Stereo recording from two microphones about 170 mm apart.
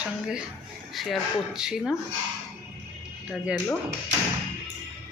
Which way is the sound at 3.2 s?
5° right (ahead or behind).